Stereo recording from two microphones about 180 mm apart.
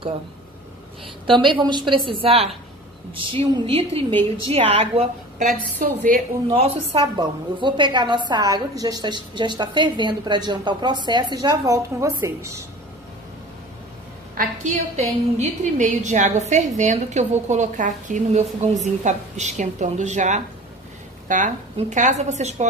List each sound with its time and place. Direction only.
1.2 s a woman's voice: 25° right (ahead or behind)
5.8 s a woman's voice: 50° right (ahead or behind)
7.2 s a woman's voice: 25° right (ahead or behind)
14.3 s a woman's voice: 45° right (ahead or behind)